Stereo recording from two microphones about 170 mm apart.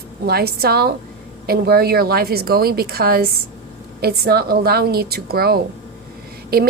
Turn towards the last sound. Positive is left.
turn(degrees=-65)  # may be behind; listen again after turning